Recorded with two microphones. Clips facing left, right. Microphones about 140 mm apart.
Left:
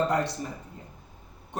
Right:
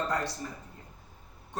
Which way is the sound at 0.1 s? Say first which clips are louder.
Left 5 dB; 20° left (ahead or behind).